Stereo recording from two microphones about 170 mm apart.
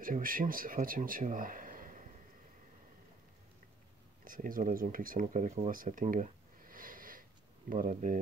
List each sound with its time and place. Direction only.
0.0 s a man's voice: 55° right (ahead or behind)
4.2 s speech: 55° right (ahead or behind)
5.7 s a sound: 55° right (ahead or behind)
7.7 s speech: 50° right (ahead or behind)